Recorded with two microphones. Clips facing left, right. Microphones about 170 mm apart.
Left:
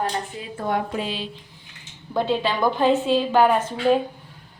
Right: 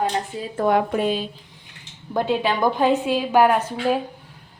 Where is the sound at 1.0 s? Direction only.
45° right (ahead or behind).